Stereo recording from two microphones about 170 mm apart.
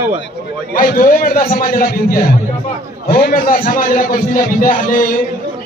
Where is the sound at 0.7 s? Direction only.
55° left (ahead or behind).